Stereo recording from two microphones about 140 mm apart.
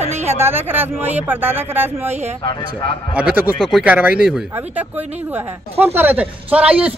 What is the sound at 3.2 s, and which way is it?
Speech, 10° right (ahead or behind).